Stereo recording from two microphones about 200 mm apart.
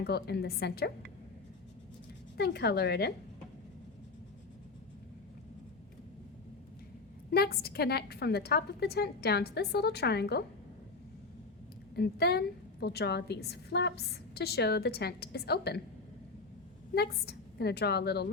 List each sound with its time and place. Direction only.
0.0 s a woman's voice: 55° left (ahead or behind)
2.4 s speech: 55° left (ahead or behind)
7.3 s a woman's voice: 50° left (ahead or behind)
11.9 s a woman's voice: 55° left (ahead or behind)
16.9 s a woman's voice: 55° left (ahead or behind)